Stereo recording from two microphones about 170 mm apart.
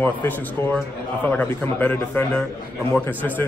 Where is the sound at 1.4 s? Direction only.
10° left (ahead or behind).